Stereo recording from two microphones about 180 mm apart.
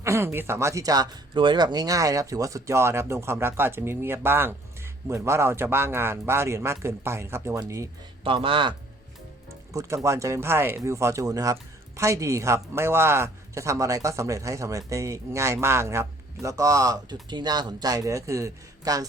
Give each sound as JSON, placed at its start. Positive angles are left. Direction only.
{"t": 0.0, "sound": "speech", "side_deg": -15}
{"t": 8.2, "sound": "speech", "side_deg": -30}
{"t": 9.7, "sound": "speech", "side_deg": -15}